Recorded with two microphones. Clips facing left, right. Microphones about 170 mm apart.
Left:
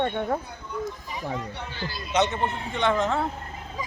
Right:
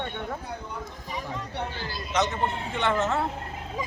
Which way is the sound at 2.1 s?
30° left (ahead or behind).